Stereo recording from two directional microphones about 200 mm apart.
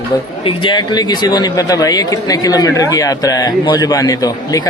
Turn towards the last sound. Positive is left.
turn(degrees=20)  # may be behind; listen again after turning